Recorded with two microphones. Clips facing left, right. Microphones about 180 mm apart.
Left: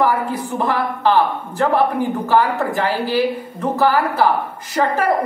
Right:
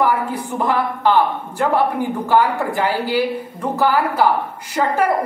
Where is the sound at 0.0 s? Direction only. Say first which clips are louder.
Left 1 dB; 15° right (ahead or behind).